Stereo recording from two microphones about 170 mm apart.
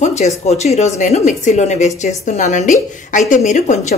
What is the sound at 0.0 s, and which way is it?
Speech, 40° left (ahead or behind).